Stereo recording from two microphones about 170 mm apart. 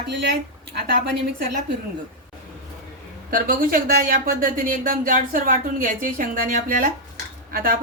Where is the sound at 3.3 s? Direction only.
55° right (ahead or behind).